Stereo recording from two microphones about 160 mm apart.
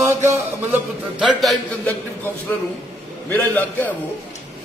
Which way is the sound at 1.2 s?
Centre (ahead or behind).